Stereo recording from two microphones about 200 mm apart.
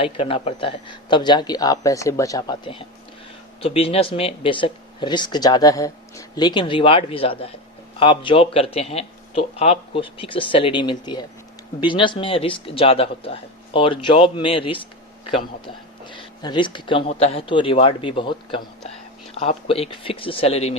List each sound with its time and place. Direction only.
0.0 s speech: 25° left (ahead or behind)